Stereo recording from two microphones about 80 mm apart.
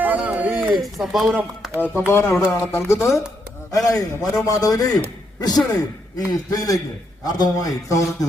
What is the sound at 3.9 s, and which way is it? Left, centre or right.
A man's voice, left.